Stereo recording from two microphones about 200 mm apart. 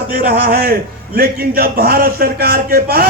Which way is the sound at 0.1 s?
50° right (ahead or behind).